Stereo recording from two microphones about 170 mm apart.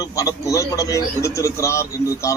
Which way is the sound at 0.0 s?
20° left (ahead or behind).